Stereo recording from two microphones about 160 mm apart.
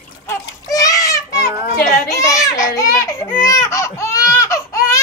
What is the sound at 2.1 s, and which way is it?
Baby cry, 20° left (ahead or behind).